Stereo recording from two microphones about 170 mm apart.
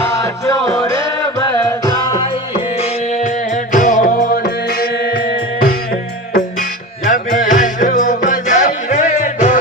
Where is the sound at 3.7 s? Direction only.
50° left (ahead or behind).